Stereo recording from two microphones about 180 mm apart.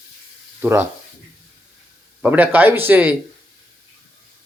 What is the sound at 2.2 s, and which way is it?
Speech, 10° right (ahead or behind).